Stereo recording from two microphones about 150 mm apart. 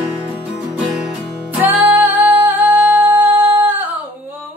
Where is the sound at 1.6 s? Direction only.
10° right (ahead or behind).